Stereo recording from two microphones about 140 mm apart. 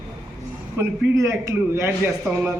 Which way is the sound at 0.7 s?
20° right (ahead or behind).